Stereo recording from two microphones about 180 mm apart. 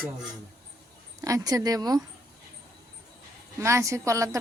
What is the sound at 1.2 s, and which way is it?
Speech, 20° right (ahead or behind).